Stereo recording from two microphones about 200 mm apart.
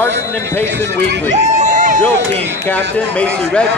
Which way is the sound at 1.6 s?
40° right (ahead or behind).